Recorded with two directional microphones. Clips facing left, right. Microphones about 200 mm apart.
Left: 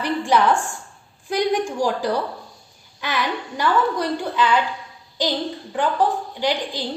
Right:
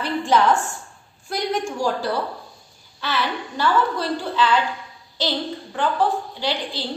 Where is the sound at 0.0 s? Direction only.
15° left (ahead or behind).